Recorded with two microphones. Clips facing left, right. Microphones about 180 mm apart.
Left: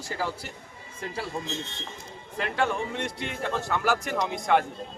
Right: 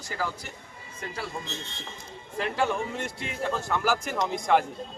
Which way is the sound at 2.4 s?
Centre (ahead or behind).